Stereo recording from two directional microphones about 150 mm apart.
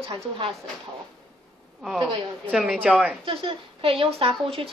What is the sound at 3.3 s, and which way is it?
A woman's voice, 35° right (ahead or behind).